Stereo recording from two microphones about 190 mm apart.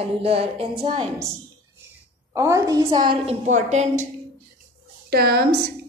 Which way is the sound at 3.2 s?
40° right (ahead or behind).